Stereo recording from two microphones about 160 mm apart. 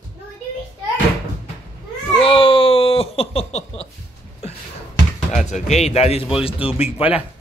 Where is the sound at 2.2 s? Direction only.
35° left (ahead or behind).